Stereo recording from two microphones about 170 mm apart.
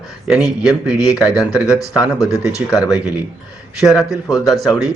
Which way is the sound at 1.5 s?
20° left (ahead or behind).